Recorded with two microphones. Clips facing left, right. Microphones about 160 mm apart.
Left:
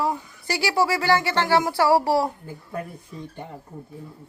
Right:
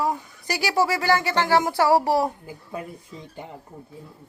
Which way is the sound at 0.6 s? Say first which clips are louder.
Even; 20° right (ahead or behind).